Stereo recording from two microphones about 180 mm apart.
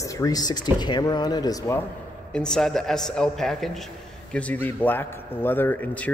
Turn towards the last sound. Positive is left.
turn(degrees=10)  # may be behind; listen again after turning